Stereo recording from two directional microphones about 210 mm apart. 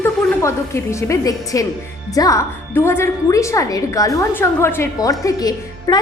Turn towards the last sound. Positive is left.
turn(degrees=20)  # may be behind; listen again after turning